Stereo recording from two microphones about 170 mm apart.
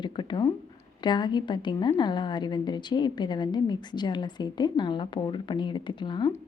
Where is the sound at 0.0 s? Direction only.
25° left (ahead or behind).